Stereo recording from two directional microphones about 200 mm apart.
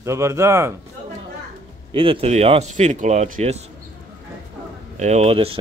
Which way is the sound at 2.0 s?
25° right (ahead or behind).